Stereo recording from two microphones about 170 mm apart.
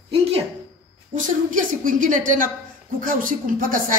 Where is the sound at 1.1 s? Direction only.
50° right (ahead or behind).